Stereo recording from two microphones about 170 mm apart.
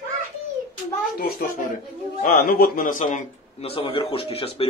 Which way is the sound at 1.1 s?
60° left (ahead or behind).